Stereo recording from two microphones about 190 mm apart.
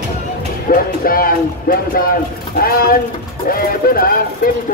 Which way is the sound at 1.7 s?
50° left (ahead or behind).